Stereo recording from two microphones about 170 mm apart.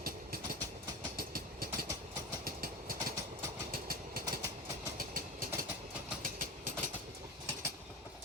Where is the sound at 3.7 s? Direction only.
60° right (ahead or behind).